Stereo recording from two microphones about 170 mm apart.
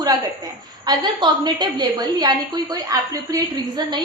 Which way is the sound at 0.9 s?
25° right (ahead or behind).